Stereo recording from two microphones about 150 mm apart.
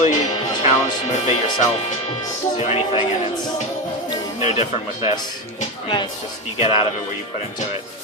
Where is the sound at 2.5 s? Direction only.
45° left (ahead or behind).